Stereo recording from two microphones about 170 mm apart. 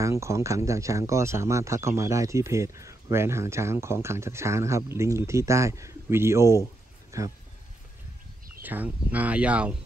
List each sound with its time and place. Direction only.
0.0 s speech: 15° right (ahead or behind)
8.6 s speech: 10° right (ahead or behind)